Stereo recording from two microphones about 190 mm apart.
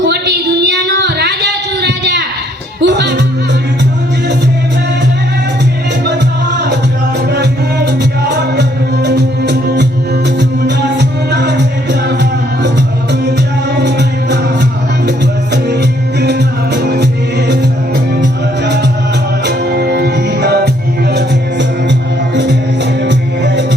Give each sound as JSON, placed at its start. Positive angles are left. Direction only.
{"t": 0.0, "sound": "a sound", "side_deg": -60}
{"t": 2.8, "sound": "music", "side_deg": -65}
{"t": 7.3, "sound": "music", "side_deg": -60}
{"t": 13.7, "sound": "music", "side_deg": -65}
{"t": 15.5, "sound": "music", "side_deg": -65}
{"t": 18.2, "sound": "music", "side_deg": -65}
{"t": 23.0, "sound": "music", "side_deg": -65}